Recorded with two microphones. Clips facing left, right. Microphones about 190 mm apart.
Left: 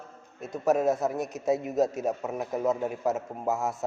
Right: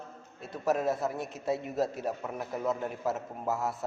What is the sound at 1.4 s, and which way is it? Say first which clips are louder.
A man's voice: left 5 dB; 20° left (ahead or behind).